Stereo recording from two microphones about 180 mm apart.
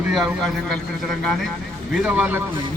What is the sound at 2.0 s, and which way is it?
Speech, 10° right (ahead or behind).